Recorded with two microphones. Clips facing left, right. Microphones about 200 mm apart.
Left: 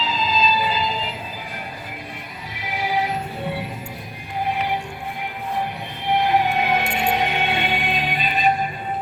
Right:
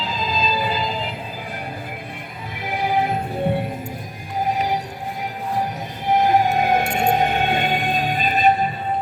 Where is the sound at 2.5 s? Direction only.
50° right (ahead or behind).